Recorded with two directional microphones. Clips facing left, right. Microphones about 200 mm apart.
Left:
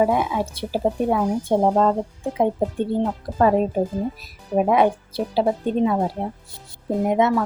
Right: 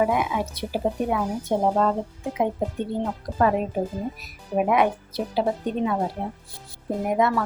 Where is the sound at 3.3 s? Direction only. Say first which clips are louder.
Even; 40° left (ahead or behind).